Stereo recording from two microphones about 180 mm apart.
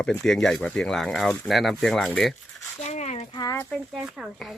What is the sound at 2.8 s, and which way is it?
Speech, 35° left (ahead or behind).